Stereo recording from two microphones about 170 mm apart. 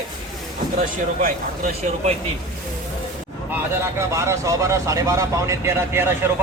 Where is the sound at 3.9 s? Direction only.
15° right (ahead or behind).